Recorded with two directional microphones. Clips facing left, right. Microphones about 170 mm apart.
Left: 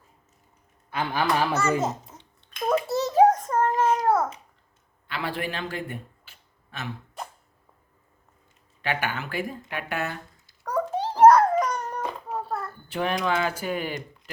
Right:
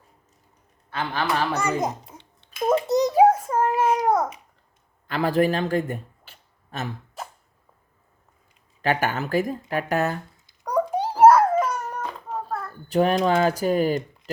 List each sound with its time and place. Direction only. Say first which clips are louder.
0.9 s a man's voice: left 1 dB; 10° left (ahead or behind)
1.8 s a child's voice: right 1 dB; 15° right (ahead or behind)
2.6 s babbling: right 4 dB; 20° right (ahead or behind)
5.0 s a man's voice: right 10 dB; 40° right (ahead or behind)
7.2 s a sound: right 1 dB; centre (ahead or behind)
8.8 s speech: right 5 dB; 40° right (ahead or behind)
10.6 s babbling: right 3 dB; 15° right (ahead or behind)
12.9 s speech: right 6 dB; 40° right (ahead or behind)